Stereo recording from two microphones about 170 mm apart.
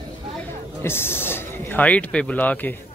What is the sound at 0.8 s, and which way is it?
A man's voice, 15° left (ahead or behind).